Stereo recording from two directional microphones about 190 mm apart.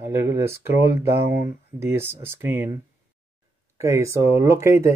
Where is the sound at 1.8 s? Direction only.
15° right (ahead or behind).